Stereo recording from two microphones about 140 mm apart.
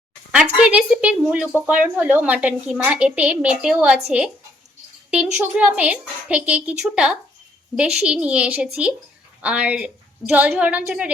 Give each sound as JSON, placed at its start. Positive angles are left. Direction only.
{"t": 0.5, "sound": "a woman's voice", "side_deg": -5}
{"t": 5.1, "sound": "a woman's voice", "side_deg": -10}